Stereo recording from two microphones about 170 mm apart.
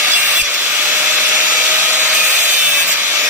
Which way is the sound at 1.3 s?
10° right (ahead or behind).